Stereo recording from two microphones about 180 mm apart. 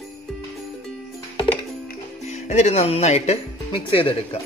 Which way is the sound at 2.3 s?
40° left (ahead or behind).